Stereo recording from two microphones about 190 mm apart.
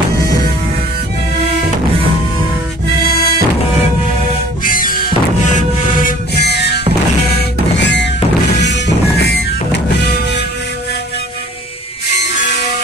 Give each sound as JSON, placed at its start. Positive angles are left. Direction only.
{"t": 3.2, "sound": "music", "side_deg": -55}
{"t": 4.6, "sound": "music", "side_deg": 45}